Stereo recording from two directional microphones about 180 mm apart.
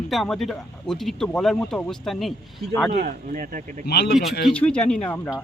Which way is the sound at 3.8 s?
60° left (ahead or behind).